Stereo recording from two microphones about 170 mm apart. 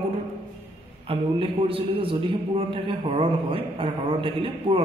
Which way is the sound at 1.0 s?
35° right (ahead or behind).